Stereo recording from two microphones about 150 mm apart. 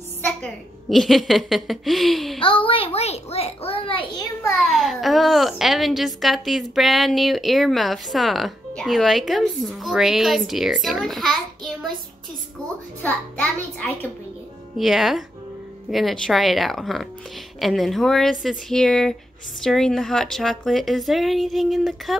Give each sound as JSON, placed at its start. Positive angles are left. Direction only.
{"t": 0.2, "sound": "a child's voice", "side_deg": 5}
{"t": 2.4, "sound": "a child's voice", "side_deg": 35}
{"t": 4.6, "sound": "a child's voice", "side_deg": 0}
{"t": 13.0, "sound": "a child's voice", "side_deg": 10}
{"t": 14.8, "sound": "a child's voice", "side_deg": 0}